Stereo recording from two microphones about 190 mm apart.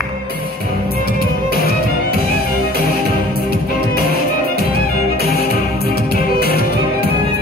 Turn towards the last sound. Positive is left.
turn(degrees=55)  # may be behind; listen again after turning